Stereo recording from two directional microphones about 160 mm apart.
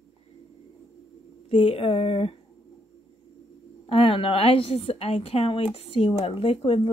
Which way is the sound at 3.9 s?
35° left (ahead or behind).